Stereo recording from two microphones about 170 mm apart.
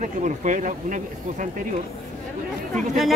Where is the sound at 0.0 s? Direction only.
45° right (ahead or behind).